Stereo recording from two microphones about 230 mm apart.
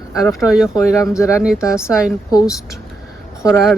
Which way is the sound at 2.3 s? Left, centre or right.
Centre.